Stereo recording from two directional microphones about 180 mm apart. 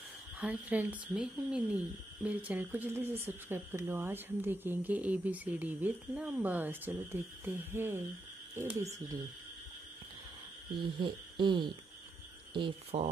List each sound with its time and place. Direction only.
0.4 s speech: 10° right (ahead or behind)
11.0 s speech: 25° right (ahead or behind)